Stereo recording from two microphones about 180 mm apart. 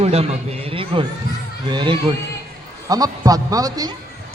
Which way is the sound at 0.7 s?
30° right (ahead or behind).